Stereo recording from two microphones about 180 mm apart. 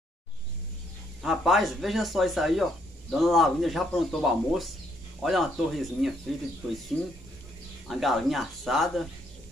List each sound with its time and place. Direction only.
1.2 s speech: centre (ahead or behind)